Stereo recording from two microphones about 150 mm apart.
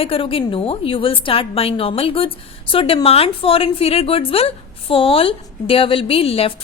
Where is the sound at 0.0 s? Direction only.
40° left (ahead or behind).